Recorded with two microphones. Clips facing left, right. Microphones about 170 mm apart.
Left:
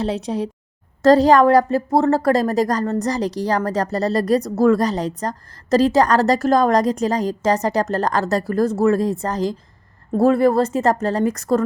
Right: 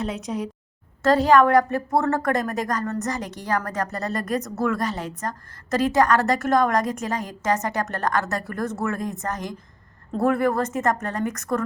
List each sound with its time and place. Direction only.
0.0 s a woman's voice: 30° left (ahead or behind)